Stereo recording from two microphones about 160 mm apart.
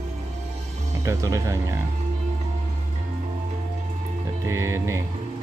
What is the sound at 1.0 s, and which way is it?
Speech, 20° right (ahead or behind).